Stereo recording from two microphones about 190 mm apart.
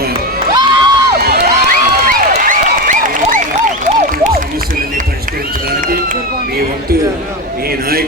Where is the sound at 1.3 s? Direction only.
60° right (ahead or behind).